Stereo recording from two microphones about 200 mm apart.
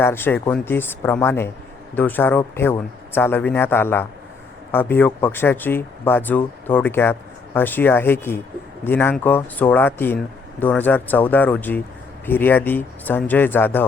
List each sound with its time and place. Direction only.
0.0 s speech: 10° left (ahead or behind)